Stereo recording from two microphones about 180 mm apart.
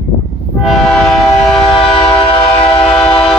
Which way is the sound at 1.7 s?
30° left (ahead or behind).